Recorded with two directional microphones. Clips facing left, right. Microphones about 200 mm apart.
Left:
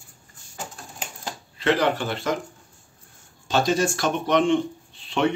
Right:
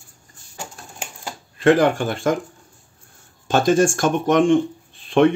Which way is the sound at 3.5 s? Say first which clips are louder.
Right 5 dB; 50° right (ahead or behind).